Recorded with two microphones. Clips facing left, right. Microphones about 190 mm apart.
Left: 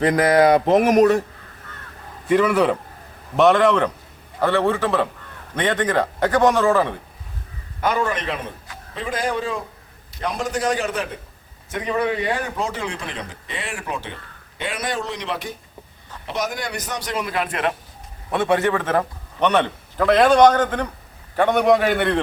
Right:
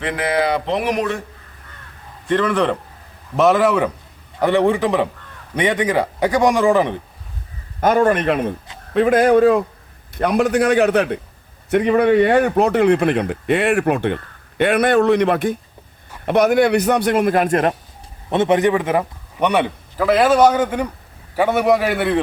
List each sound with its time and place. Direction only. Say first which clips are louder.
0.0 s speech: left 4 dB; 40° left (ahead or behind)
2.2 s a man's voice: left 1 dB; 10° left (ahead or behind)
3.3 s a man's voice: right 1 dB; centre (ahead or behind)
7.8 s speech: right 7 dB; 50° right (ahead or behind)
18.3 s a man's voice: right 4 dB; 20° right (ahead or behind); by 22.2 s centre (ahead or behind)